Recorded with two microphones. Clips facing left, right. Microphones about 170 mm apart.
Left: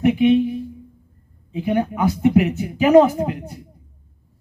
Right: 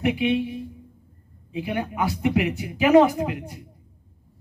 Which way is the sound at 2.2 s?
40° left (ahead or behind).